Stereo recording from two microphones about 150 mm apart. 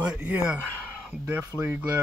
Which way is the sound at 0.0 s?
10° right (ahead or behind).